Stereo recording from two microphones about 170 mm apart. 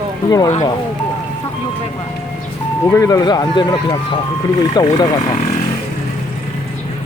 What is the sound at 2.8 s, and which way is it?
Speech, 20° left (ahead or behind).